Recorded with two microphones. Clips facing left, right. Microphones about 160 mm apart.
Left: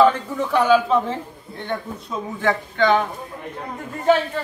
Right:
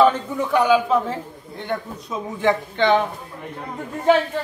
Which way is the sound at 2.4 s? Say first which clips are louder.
Right 1 dB; 20° right (ahead or behind).